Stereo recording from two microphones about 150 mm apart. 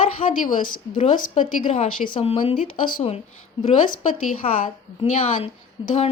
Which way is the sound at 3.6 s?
55° left (ahead or behind).